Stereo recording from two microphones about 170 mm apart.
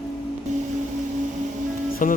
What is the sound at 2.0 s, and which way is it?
Music, 50° left (ahead or behind).